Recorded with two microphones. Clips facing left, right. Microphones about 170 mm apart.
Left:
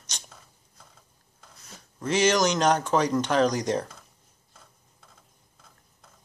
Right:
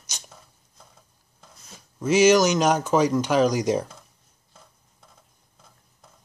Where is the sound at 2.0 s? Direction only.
5° right (ahead or behind).